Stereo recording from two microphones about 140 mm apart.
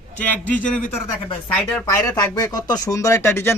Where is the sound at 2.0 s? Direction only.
25° left (ahead or behind).